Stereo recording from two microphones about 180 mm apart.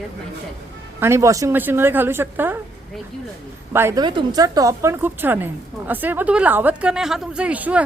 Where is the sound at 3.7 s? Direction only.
15° right (ahead or behind).